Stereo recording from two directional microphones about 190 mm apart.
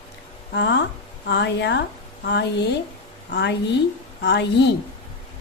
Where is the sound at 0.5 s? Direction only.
65° left (ahead or behind).